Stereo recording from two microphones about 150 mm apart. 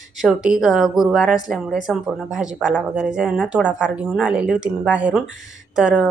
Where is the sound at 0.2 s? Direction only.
5° right (ahead or behind).